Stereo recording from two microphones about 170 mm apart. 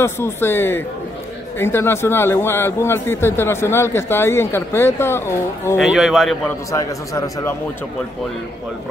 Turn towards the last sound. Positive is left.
turn(degrees=20)  # may be behind; listen again after turning